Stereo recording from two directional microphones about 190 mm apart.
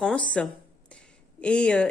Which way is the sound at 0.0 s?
5° left (ahead or behind).